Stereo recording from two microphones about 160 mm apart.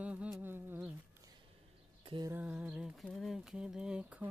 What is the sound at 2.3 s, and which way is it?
Mantra, 10° right (ahead or behind).